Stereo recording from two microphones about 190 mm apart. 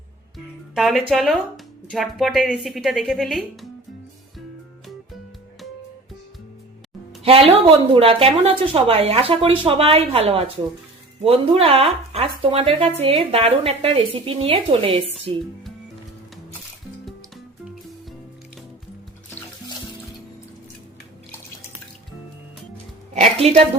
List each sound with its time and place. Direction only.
0.3 s music: centre (ahead or behind)
1.1 s speech: centre (ahead or behind)
7.3 s speech: 30° right (ahead or behind)
23.4 s speech: 30° right (ahead or behind)